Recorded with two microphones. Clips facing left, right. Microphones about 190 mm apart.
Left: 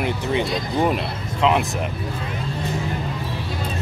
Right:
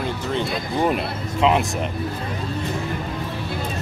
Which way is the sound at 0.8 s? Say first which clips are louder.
Right 1 dB; centre (ahead or behind).